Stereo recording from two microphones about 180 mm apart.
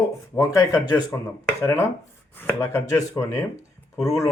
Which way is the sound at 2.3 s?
10° left (ahead or behind).